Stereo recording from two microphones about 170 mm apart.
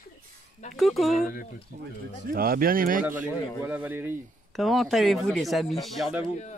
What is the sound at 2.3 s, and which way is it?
Speech, 60° right (ahead or behind).